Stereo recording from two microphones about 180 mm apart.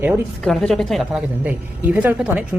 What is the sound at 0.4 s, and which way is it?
Speech, centre (ahead or behind).